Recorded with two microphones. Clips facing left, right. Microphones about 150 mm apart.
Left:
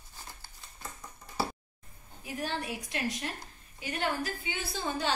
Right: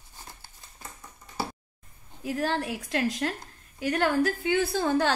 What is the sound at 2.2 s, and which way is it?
A woman's voice, 90° right.